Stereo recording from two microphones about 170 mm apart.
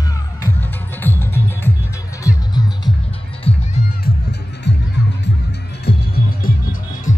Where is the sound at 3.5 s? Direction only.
35° left (ahead or behind).